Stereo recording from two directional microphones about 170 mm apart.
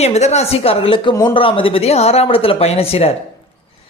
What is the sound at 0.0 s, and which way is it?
Speech, 40° left (ahead or behind).